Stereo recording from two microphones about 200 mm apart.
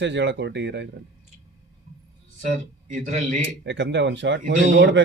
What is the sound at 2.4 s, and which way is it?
A man's voice, 40° right (ahead or behind).